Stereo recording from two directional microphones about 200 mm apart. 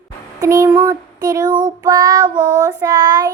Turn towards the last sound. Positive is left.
turn(degrees=-20)  # may be behind; listen again after turning